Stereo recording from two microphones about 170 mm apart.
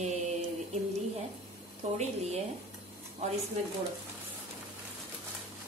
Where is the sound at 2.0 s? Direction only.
40° right (ahead or behind).